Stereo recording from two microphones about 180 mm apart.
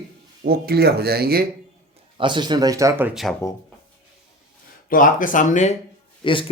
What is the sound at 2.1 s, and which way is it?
Speech, 25° right (ahead or behind).